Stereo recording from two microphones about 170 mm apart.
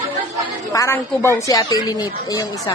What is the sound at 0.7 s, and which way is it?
Speech, 15° left (ahead or behind).